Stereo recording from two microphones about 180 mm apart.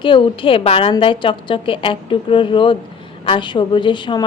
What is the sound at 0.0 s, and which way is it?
A woman's voice, 30° left (ahead or behind).